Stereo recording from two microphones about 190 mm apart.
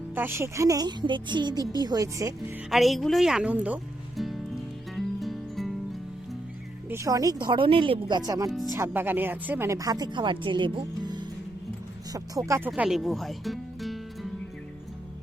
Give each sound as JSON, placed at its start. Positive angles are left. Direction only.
{"t": 0.1, "sound": "a woman's voice", "side_deg": -10}
{"t": 2.6, "sound": "a woman's voice", "side_deg": 0}
{"t": 4.2, "sound": "music", "side_deg": 0}
{"t": 6.9, "sound": "a woman's voice", "side_deg": -15}
{"t": 8.7, "sound": "speech", "side_deg": -10}
{"t": 12.5, "sound": "speech", "side_deg": -10}